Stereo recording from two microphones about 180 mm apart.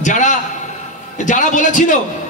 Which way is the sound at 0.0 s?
45° left (ahead or behind).